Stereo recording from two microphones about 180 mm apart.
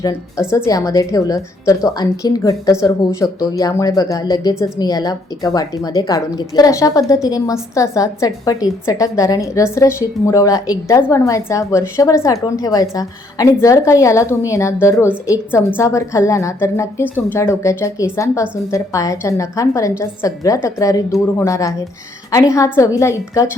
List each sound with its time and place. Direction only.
0.0 s a woman's voice: 20° left (ahead or behind)